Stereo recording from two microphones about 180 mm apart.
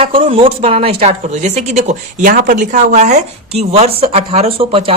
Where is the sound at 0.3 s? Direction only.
30° right (ahead or behind).